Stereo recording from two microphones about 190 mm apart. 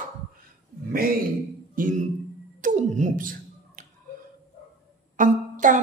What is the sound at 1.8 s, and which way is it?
Speech, 45° right (ahead or behind).